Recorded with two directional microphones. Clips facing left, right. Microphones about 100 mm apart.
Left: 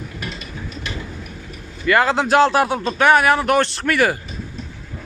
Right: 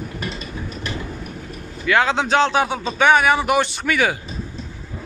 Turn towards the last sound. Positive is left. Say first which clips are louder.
# left 2 dB
turn(degrees=0)  # may be behind; listen again after turning